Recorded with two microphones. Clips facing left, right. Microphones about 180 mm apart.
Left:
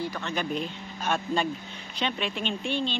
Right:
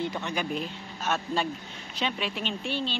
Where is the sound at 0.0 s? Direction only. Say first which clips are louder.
Right 1 dB; 20° right (ahead or behind).